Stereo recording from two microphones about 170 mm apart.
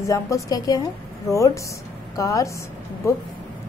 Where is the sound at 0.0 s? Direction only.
20° left (ahead or behind).